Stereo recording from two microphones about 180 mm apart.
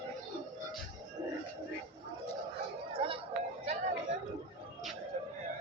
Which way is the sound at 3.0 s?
30° right (ahead or behind).